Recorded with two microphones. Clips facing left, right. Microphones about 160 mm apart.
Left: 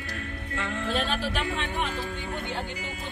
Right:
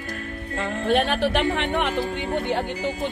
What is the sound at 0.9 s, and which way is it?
Speech, 65° right (ahead or behind).